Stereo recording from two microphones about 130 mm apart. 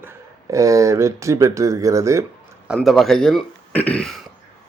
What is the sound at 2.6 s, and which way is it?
Speech, centre (ahead or behind).